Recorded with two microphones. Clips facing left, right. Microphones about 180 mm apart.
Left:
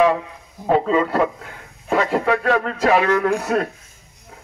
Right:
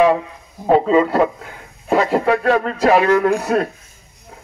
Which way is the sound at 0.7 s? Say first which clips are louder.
Right 4 dB; 30° right (ahead or behind).